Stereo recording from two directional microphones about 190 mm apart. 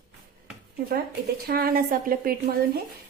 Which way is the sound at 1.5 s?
50° right (ahead or behind).